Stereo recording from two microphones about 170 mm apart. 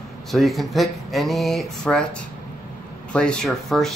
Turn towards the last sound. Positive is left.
turn(degrees=0)  # may be behind; listen again after turning